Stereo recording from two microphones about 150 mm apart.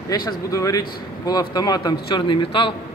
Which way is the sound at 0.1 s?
25° left (ahead or behind).